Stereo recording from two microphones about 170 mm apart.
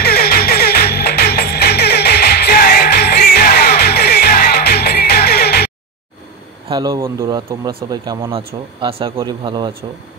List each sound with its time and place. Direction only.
0.0 s music: 65° left (ahead or behind)
6.7 s speech: 20° right (ahead or behind)